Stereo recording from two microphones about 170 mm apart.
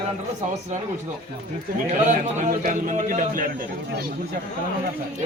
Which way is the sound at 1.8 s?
45° right (ahead or behind).